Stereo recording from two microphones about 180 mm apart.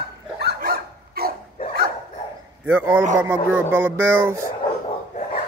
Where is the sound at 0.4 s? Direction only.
60° right (ahead or behind).